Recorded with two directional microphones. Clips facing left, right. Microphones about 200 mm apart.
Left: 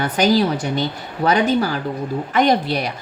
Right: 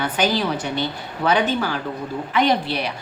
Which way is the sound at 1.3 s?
40° left (ahead or behind).